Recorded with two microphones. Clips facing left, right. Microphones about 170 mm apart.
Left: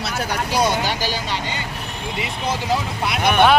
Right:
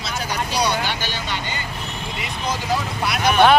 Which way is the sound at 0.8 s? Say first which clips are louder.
Left 3 dB; 35° left (ahead or behind).